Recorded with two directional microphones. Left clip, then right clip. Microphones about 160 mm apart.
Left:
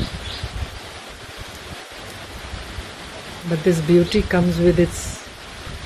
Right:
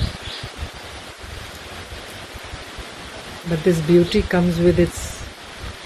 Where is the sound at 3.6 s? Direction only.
5° left (ahead or behind).